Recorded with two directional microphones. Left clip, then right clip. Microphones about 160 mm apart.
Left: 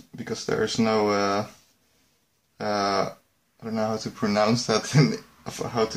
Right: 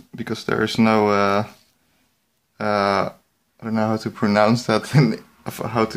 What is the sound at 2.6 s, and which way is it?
Speech, 25° right (ahead or behind).